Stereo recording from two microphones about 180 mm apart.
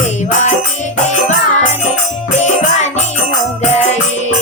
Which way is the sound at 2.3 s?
40° left (ahead or behind).